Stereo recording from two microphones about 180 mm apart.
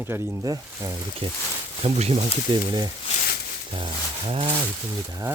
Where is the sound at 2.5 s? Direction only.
30° right (ahead or behind).